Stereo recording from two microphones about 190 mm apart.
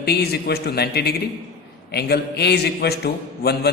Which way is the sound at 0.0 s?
60° left (ahead or behind).